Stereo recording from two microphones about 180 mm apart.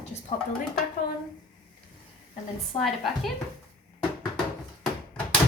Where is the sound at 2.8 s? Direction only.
Centre (ahead or behind).